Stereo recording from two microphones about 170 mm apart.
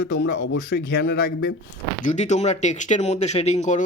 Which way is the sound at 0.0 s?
90° left.